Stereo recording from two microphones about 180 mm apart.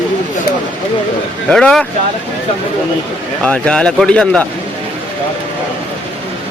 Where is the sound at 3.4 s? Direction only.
5° left (ahead or behind).